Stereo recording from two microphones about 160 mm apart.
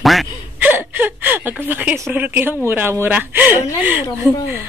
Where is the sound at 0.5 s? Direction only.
10° right (ahead or behind).